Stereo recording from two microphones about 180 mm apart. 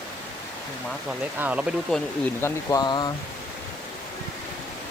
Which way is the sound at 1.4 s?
10° right (ahead or behind).